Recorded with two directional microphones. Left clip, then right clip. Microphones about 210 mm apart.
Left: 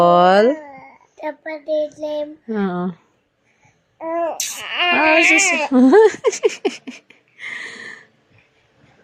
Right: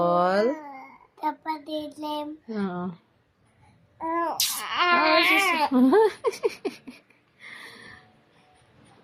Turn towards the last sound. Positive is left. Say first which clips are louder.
# left 13 dB
turn(degrees=40)  # may be behind; listen again after turning